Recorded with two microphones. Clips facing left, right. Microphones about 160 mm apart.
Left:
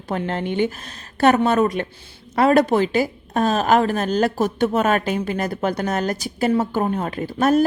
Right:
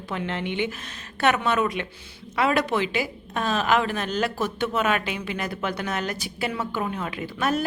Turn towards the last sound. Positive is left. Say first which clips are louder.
# left 8 dB
turn(degrees=40)  # may be behind; listen again after turning